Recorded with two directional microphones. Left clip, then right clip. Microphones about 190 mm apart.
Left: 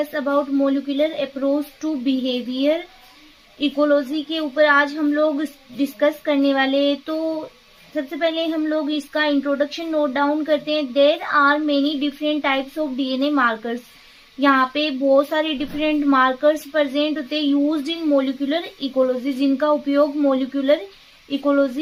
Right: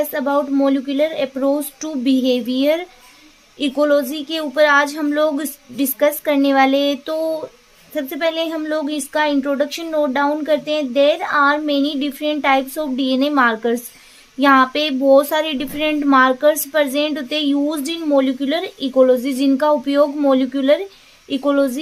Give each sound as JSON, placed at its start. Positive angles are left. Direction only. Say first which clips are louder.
{"t": 0.1, "sound": "a woman's voice", "louder": "right 2 dB", "side_deg": -40}